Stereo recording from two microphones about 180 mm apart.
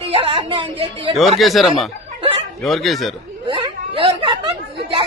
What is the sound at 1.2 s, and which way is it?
Speech, centre (ahead or behind).